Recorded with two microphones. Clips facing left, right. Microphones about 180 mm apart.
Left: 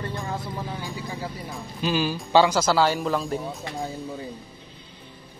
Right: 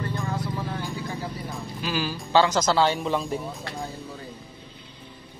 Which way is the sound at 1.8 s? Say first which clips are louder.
Left 5 dB; 20° left (ahead or behind).